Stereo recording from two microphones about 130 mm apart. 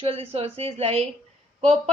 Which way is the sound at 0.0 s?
50° right (ahead or behind).